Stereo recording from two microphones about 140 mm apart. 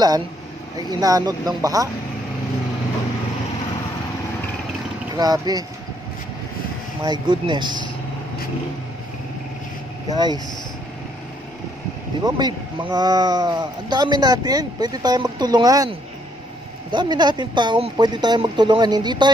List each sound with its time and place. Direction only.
0.7 s speech: 25° right (ahead or behind)
5.1 s speech: 30° right (ahead or behind)
7.0 s speech: 30° right (ahead or behind)
10.0 s speech: 30° right (ahead or behind)
12.2 s speech: 30° right (ahead or behind)
16.9 s speech: 30° right (ahead or behind)